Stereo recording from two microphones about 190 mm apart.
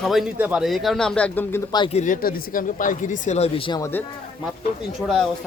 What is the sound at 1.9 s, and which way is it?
Speech, 45° left (ahead or behind).